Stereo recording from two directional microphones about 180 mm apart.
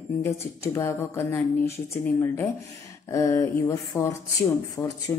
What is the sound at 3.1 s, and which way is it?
Speech, 20° left (ahead or behind).